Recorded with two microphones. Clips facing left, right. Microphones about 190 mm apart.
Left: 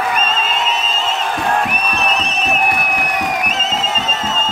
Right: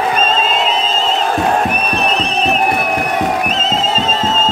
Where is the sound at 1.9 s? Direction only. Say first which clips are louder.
Right 3 dB; 30° right (ahead or behind).